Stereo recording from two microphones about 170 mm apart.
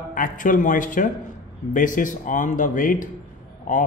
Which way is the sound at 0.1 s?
50° left (ahead or behind).